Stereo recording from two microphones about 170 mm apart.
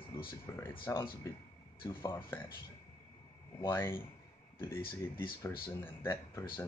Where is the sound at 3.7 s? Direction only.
15° left (ahead or behind).